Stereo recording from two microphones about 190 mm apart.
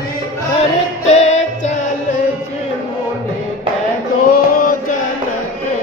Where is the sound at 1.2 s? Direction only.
35° left (ahead or behind).